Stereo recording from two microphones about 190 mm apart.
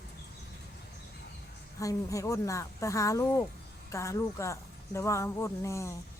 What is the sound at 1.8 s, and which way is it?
Speech, 15° left (ahead or behind).